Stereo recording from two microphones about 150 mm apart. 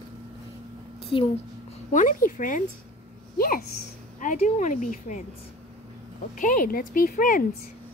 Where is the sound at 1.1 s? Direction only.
35° left (ahead or behind).